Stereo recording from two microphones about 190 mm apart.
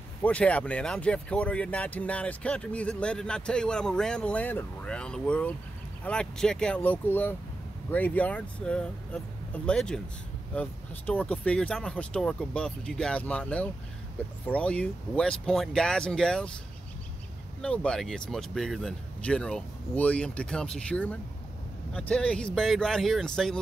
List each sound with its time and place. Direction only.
0.2 s speech: 5° left (ahead or behind)
17.6 s speech: 5° left (ahead or behind)